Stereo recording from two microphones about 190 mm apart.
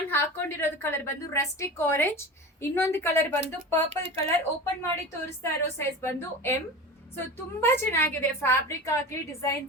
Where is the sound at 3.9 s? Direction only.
30° right (ahead or behind).